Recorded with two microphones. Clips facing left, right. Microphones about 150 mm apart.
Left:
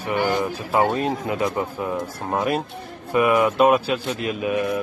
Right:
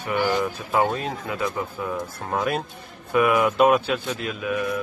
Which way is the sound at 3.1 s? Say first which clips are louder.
Left 1 dB; centre (ahead or behind).